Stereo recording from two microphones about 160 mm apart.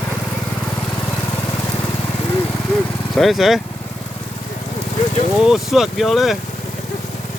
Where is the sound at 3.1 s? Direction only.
Centre (ahead or behind).